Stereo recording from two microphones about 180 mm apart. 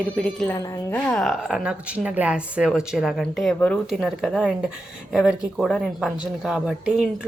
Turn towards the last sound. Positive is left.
turn(degrees=-5)  # may be behind; listen again after turning